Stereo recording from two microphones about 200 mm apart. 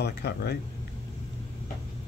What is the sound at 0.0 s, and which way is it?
Speech, 55° left (ahead or behind).